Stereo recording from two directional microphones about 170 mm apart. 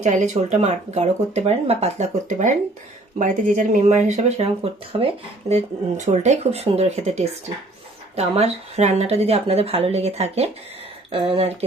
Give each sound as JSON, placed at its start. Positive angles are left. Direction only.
{"t": 0.0, "sound": "speech", "side_deg": -45}